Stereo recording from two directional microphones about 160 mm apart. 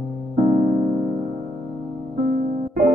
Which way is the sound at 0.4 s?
40° right (ahead or behind).